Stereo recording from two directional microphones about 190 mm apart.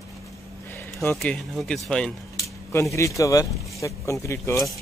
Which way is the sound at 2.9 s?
15° left (ahead or behind).